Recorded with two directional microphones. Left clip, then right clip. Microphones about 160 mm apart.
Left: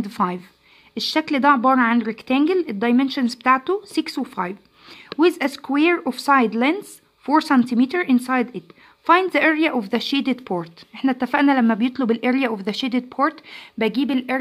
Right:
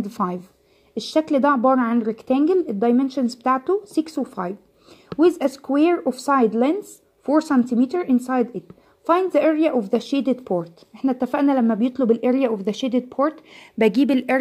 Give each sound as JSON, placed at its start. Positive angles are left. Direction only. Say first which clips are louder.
{"t": 0.2, "sound": "speech", "louder": "left 3 dB", "side_deg": 15}
{"t": 0.9, "sound": "a woman's voice", "louder": "right 1 dB", "side_deg": 0}
{"t": 13.6, "sound": "speech", "louder": "right 5 dB", "side_deg": -25}